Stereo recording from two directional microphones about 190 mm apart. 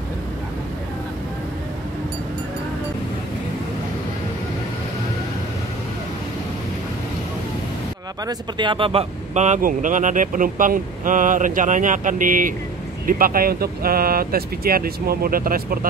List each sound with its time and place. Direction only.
8.3 s speech: 25° right (ahead or behind); by 15.9 s 50° right (ahead or behind)